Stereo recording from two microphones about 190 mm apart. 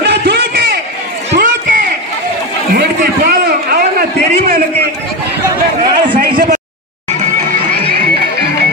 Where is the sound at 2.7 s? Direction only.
55° right (ahead or behind).